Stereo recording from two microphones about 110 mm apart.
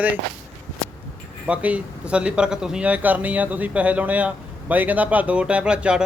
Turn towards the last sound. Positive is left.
turn(degrees=-10)  # may be behind; listen again after turning